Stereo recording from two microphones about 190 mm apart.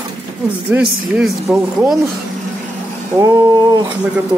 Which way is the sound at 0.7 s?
5° right (ahead or behind).